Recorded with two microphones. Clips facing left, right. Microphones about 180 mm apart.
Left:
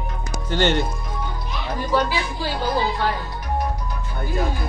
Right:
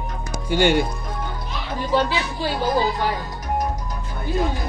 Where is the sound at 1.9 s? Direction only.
25° right (ahead or behind).